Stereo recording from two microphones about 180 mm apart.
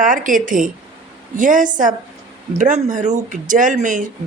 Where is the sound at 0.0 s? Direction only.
45° right (ahead or behind).